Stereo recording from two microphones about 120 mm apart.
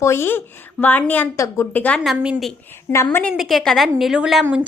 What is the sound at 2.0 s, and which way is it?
Speech, centre (ahead or behind).